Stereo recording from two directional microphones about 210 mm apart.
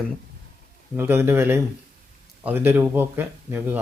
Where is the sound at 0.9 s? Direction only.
10° right (ahead or behind).